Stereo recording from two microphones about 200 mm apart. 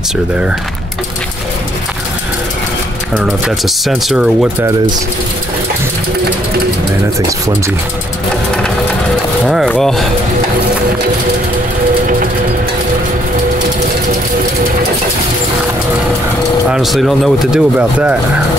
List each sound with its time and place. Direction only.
3.2 s speech: centre (ahead or behind)
7.2 s speech: 15° right (ahead or behind)
9.5 s speech: centre (ahead or behind)
16.7 s speech: centre (ahead or behind)